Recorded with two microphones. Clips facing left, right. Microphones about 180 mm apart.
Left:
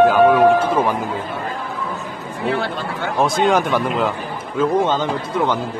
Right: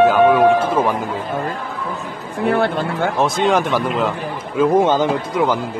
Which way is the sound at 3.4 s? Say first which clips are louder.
Even; centre (ahead or behind).